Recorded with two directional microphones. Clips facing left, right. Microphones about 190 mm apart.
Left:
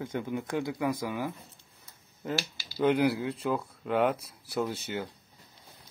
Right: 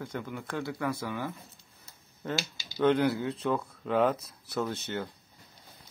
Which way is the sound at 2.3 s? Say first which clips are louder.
Left 1 dB; 20° right (ahead or behind).